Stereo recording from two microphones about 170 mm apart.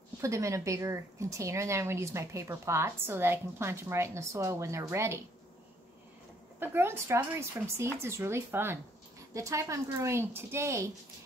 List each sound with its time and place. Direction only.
0.2 s a woman's voice: 20° right (ahead or behind)
6.6 s a woman's voice: 15° right (ahead or behind)